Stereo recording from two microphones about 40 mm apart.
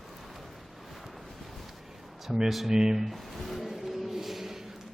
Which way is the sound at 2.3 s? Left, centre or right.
Centre.